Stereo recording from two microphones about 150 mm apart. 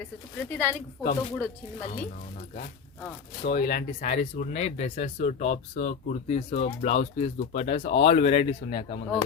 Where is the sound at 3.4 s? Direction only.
90° left.